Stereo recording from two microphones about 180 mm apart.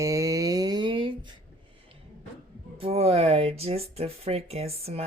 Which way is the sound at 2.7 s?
30° right (ahead or behind).